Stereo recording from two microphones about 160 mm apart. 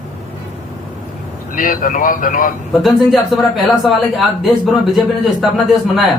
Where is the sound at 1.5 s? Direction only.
60° left (ahead or behind).